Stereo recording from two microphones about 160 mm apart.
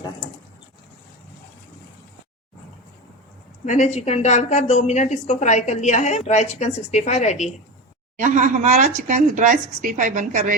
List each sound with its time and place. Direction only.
3.7 s a woman's voice: 45° left (ahead or behind)
8.1 s speech: 50° right (ahead or behind)